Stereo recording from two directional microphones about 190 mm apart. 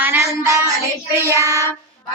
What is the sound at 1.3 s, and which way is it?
Child singing, 15° right (ahead or behind).